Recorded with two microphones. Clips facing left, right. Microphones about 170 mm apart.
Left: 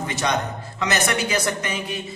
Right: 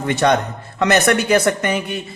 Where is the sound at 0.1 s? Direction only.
60° right (ahead or behind).